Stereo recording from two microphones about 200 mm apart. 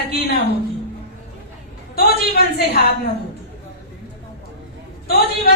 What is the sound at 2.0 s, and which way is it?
Speech, 50° left (ahead or behind).